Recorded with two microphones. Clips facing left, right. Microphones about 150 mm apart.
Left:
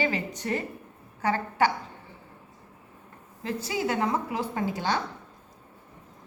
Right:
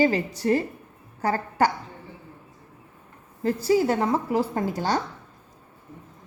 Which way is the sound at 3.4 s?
40° right (ahead or behind).